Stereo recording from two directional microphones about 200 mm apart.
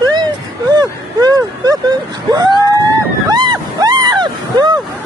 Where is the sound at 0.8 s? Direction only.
20° right (ahead or behind).